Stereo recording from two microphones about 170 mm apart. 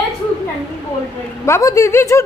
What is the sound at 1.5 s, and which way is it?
Speech, 15° left (ahead or behind).